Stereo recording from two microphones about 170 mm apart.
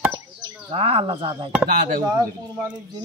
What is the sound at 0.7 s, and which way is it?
Speech, 35° right (ahead or behind).